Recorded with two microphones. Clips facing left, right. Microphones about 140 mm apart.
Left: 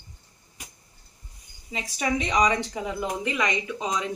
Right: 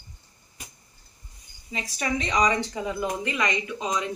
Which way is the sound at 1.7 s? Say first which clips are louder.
Left 2 dB; 15° left (ahead or behind).